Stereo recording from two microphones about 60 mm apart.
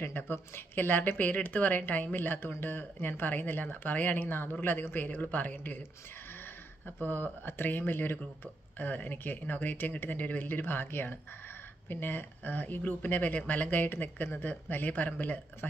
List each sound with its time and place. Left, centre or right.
0.0 s speech: left
7.0 s speech: left